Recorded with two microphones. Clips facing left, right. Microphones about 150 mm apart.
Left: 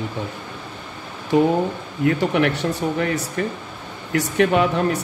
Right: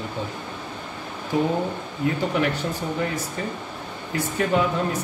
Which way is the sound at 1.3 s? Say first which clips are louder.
Left 6 dB; 70° left (ahead or behind).